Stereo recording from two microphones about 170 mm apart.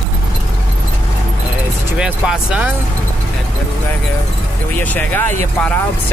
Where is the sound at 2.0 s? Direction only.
5° right (ahead or behind).